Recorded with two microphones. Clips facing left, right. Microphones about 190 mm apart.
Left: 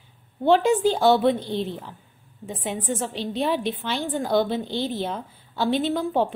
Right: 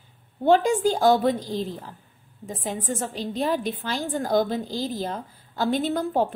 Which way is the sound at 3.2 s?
45° right (ahead or behind).